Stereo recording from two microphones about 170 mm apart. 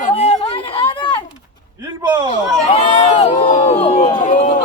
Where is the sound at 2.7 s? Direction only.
35° left (ahead or behind).